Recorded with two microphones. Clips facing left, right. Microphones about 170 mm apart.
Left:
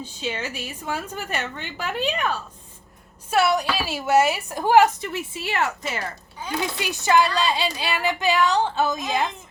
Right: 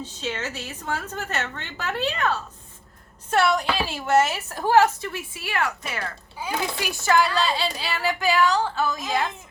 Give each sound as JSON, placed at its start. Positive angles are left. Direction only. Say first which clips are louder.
{"t": 0.0, "sound": "a woman's voice", "louder": "left 1 dB", "side_deg": 10}